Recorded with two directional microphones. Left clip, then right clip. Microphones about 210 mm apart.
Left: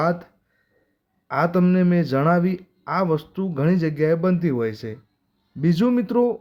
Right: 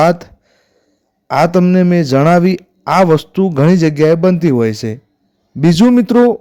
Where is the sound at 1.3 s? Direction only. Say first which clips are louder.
Right 9 dB; 40° right (ahead or behind).